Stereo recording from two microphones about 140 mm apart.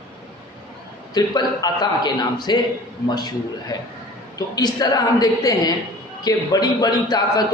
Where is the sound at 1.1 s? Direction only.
30° left (ahead or behind).